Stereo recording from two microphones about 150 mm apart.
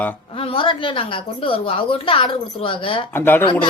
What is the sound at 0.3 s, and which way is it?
A woman's voice, 35° left (ahead or behind).